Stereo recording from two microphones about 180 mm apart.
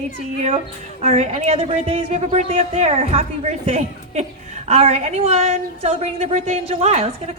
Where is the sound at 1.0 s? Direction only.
35° right (ahead or behind).